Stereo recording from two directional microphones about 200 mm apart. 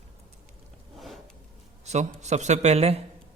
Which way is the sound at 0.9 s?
Centre (ahead or behind).